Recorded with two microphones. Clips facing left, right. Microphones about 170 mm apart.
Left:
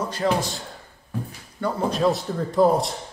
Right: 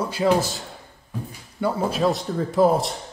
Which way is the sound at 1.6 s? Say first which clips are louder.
Right 1 dB; 5° right (ahead or behind).